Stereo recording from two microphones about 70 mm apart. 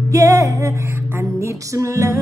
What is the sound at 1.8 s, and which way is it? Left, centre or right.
Music, right.